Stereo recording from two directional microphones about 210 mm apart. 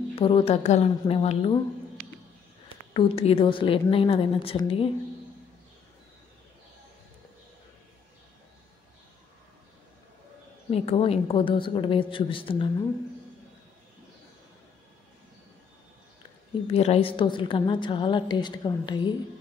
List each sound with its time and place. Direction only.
0.1 s a woman's voice: 25° left (ahead or behind)
2.7 s a woman's voice: 25° left (ahead or behind)
10.7 s a woman's voice: 30° left (ahead or behind)
16.7 s a woman's voice: 30° left (ahead or behind)